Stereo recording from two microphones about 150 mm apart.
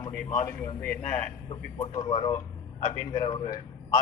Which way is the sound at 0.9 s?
60° left (ahead or behind).